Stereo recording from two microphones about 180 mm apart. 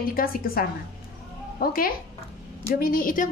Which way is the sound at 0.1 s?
55° left (ahead or behind).